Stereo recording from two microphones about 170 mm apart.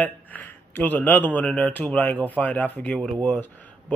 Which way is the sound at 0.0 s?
10° left (ahead or behind).